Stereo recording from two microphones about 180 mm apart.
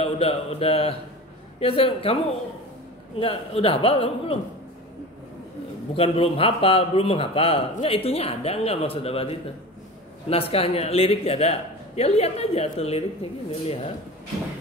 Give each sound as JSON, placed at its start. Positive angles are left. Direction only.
{"t": 0.0, "sound": "a man's voice", "side_deg": 35}
{"t": 3.2, "sound": "a man's voice", "side_deg": 30}
{"t": 5.9, "sound": "a man's voice", "side_deg": 30}